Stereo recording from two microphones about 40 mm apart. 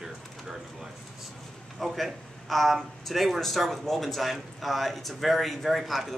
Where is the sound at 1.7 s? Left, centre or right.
Centre.